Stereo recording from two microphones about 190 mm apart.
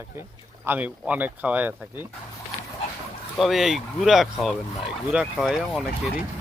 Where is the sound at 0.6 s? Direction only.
10° right (ahead or behind).